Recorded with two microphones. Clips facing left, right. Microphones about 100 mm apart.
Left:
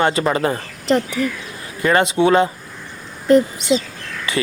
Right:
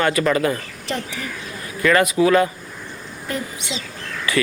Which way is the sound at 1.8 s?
30° left (ahead or behind).